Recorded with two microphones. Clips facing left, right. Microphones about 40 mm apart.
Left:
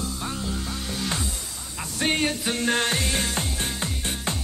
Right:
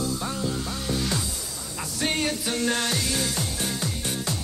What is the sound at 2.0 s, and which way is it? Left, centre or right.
Music, left.